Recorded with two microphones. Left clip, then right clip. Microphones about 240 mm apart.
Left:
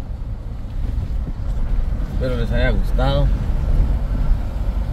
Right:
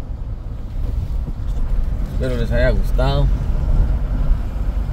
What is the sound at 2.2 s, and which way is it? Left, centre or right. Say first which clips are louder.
Speech: right 3 dB; right.